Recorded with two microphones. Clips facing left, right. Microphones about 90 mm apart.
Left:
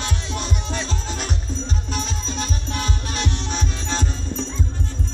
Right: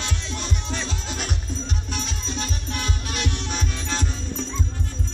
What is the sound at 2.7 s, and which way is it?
Music, 30° left (ahead or behind).